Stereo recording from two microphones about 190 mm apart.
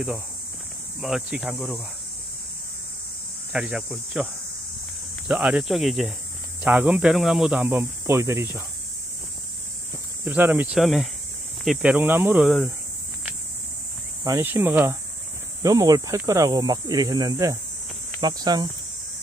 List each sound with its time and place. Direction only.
1.0 s speech: centre (ahead or behind)
3.5 s speech: 5° right (ahead or behind)
5.3 s speech: 5° right (ahead or behind)
10.2 s speech: 10° right (ahead or behind)
14.2 s speech: 15° right (ahead or behind)